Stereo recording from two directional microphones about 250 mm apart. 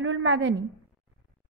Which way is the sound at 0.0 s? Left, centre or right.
Right.